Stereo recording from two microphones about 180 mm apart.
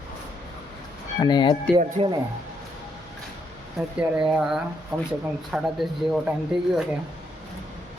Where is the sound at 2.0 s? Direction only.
35° right (ahead or behind).